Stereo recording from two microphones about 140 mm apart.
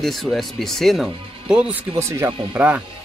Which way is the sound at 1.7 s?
20° right (ahead or behind).